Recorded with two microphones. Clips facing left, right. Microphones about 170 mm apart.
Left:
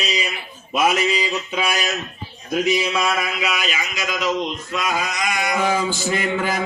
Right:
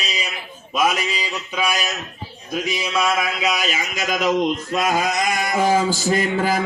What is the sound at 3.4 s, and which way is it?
Speech, 40° right (ahead or behind).